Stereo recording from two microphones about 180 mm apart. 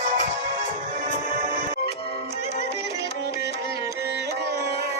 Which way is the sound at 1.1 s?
45° right (ahead or behind).